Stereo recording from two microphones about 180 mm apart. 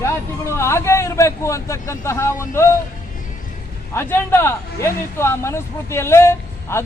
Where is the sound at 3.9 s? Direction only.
15° left (ahead or behind).